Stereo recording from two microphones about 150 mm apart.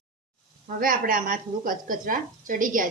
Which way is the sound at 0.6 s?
70° right (ahead or behind).